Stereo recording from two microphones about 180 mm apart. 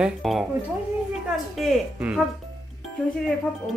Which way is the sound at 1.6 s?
Centre (ahead or behind).